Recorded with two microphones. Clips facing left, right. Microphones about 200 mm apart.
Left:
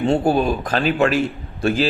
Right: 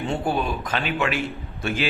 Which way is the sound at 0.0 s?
35° left (ahead or behind).